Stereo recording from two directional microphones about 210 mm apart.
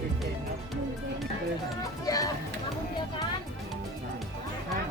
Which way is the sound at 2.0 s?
15° left (ahead or behind).